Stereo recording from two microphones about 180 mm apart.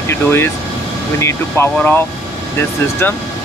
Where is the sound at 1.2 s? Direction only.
15° left (ahead or behind).